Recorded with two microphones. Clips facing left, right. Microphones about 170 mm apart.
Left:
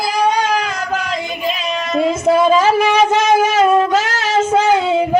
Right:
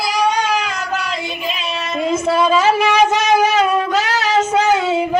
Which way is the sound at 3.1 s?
50° left (ahead or behind).